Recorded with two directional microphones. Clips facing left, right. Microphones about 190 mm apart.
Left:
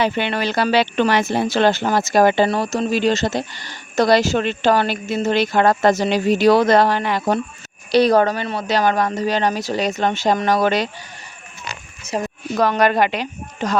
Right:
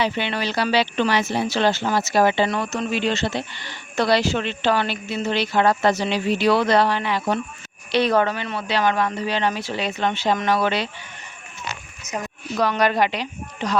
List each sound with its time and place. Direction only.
0.0 s a woman's voice: 50° left (ahead or behind)
12.1 s a woman's voice: 30° left (ahead or behind)
12.5 s a woman's voice: 50° left (ahead or behind)